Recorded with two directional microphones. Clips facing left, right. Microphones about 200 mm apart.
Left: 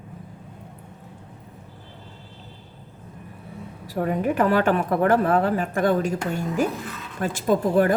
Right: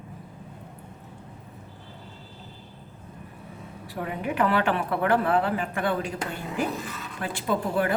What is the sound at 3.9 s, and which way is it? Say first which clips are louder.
A woman's voice: left 7 dB; 40° left (ahead or behind).